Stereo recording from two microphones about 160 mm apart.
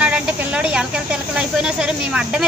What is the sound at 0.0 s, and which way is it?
A woman's voice, 5° right (ahead or behind).